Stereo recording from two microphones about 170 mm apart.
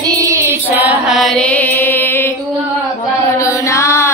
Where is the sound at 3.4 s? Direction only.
15° left (ahead or behind).